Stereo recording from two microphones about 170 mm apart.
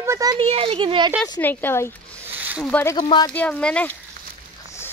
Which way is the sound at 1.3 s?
10° left (ahead or behind).